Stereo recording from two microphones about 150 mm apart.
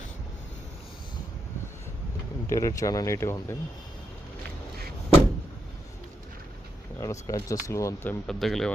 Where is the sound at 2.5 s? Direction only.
20° left (ahead or behind).